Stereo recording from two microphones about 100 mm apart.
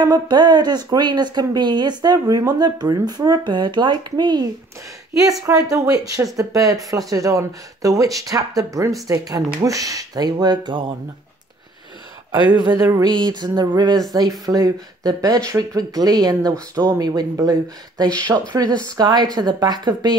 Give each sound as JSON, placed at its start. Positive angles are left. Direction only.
{"t": 0.0, "sound": "speech", "side_deg": -45}
{"t": 12.6, "sound": "speech", "side_deg": -35}
{"t": 13.1, "sound": "speech", "side_deg": -45}